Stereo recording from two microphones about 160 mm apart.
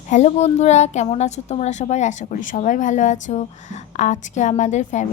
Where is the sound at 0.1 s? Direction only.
45° left (ahead or behind).